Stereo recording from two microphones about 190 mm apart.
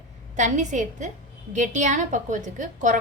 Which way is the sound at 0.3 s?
40° right (ahead or behind).